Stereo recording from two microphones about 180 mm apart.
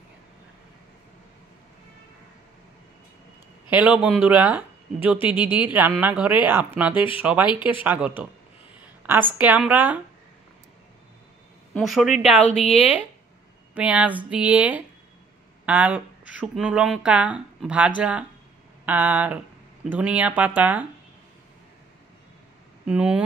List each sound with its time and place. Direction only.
3.7 s speech: 5° right (ahead or behind)
5.4 s speech: 25° left (ahead or behind)
5.7 s speech: 10° right (ahead or behind)
7.4 s speech: 25° left (ahead or behind)
7.8 s speech: 10° right (ahead or behind)
8.8 s a sound: 10° right (ahead or behind)
9.4 s speech: 5° right (ahead or behind)
11.7 s a woman's voice: centre (ahead or behind)
12.4 s a woman's voice: 35° left (ahead or behind)
13.7 s speech: 5° right (ahead or behind)
22.8 s a woman's voice: 5° right (ahead or behind)